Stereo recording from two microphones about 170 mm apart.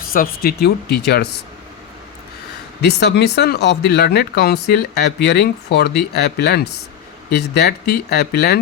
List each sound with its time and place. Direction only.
0.0 s speech: 60° left (ahead or behind); by 1.3 s 80° left
2.8 s speech: 80° left